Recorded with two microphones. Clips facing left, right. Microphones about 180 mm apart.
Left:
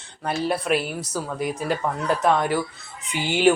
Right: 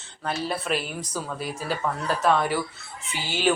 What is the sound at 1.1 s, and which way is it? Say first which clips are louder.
Speech: left 5 dB; 10° left (ahead or behind).